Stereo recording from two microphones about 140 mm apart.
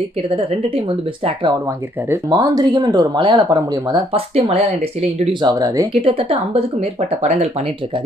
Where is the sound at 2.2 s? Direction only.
25° right (ahead or behind).